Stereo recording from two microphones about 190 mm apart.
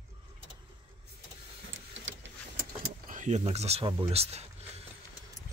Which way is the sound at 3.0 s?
40° right (ahead or behind).